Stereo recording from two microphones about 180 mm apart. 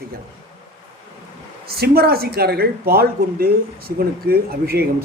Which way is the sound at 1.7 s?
60° right (ahead or behind).